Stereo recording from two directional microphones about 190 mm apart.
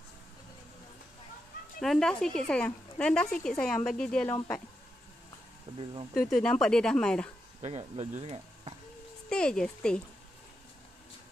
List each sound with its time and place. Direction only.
1.8 s speech: 5° left (ahead or behind)
6.3 s speech: 5° left (ahead or behind)
7.6 s speech: 35° right (ahead or behind)
9.3 s speech: 5° left (ahead or behind)